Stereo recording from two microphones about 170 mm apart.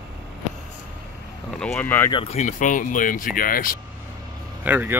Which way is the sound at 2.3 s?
50° left (ahead or behind).